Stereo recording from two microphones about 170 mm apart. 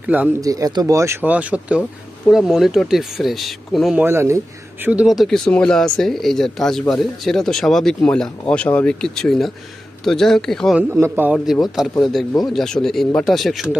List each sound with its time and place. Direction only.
0.0 s speech: 10° right (ahead or behind)
0.4 s speech: 20° right (ahead or behind); by 4.0 s centre (ahead or behind)
4.0 s speech: 15° right (ahead or behind)
4.8 s speech: 5° right (ahead or behind)
10.8 s speech: 10° right (ahead or behind)